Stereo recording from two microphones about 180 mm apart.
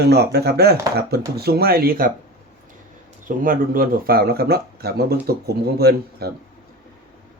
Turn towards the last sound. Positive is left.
turn(degrees=-60)  # may be behind; listen again after turning